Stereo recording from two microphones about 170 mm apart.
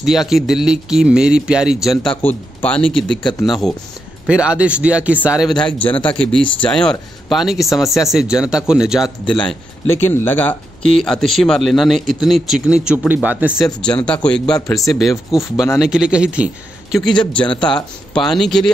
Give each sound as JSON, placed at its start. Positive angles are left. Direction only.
{"t": 0.0, "sound": "speech", "side_deg": 0}
{"t": 3.2, "sound": "speech", "side_deg": 25}
{"t": 3.4, "sound": "speech", "side_deg": 0}
{"t": 14.0, "sound": "speech", "side_deg": 5}